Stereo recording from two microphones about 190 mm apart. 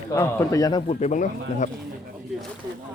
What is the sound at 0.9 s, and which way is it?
Speech, 35° left (ahead or behind).